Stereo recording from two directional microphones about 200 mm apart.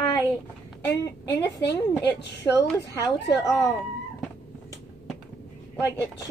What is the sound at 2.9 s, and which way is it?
Speech, 15° left (ahead or behind).